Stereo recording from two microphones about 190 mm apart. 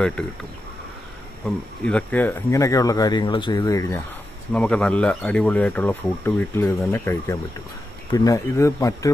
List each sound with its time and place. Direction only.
1.9 s speech: 5° left (ahead or behind)
4.5 s speech: 5° left (ahead or behind)